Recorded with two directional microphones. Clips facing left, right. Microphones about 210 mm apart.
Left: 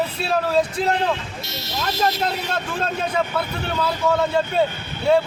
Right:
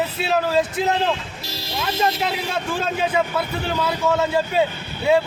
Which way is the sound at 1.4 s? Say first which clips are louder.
Even; 30° right (ahead or behind).